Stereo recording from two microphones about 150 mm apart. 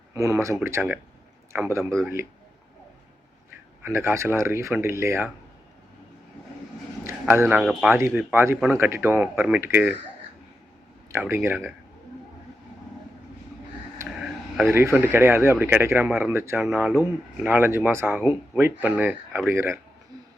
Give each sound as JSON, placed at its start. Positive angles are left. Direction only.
{"t": 0.1, "sound": "speech", "side_deg": -20}
{"t": 3.8, "sound": "speech", "side_deg": -15}
{"t": 7.0, "sound": "speech", "side_deg": -15}
{"t": 7.9, "sound": "speech", "side_deg": -15}
{"t": 11.1, "sound": "speech", "side_deg": -15}
{"t": 14.0, "sound": "a sound", "side_deg": -20}
{"t": 14.7, "sound": "speech", "side_deg": -15}